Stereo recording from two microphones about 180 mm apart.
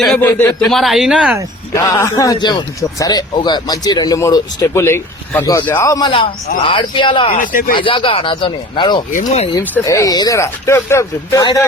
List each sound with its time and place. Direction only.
0.2 s speech: 10° left (ahead or behind)
0.7 s speech: centre (ahead or behind)
1.7 s a man's voice: 15° left (ahead or behind)
6.1 s a man's voice: 30° left (ahead or behind)
7.3 s speech: 50° left (ahead or behind)
7.7 s a man's voice: 25° left (ahead or behind)
9.1 s speech: 35° left (ahead or behind)
9.7 s speech: 15° left (ahead or behind)